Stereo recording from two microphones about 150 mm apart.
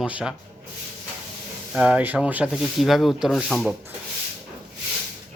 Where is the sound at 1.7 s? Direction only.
5° right (ahead or behind).